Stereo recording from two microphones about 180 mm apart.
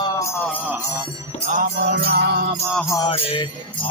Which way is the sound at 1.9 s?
65° right (ahead or behind).